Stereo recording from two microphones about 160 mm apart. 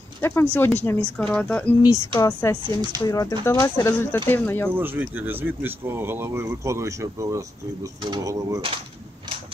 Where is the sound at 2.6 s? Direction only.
25° right (ahead or behind).